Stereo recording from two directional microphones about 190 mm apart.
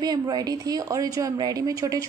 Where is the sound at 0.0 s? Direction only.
20° right (ahead or behind).